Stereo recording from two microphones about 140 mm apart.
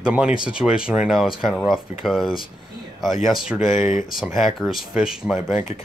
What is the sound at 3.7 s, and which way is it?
Speech, 60° left (ahead or behind).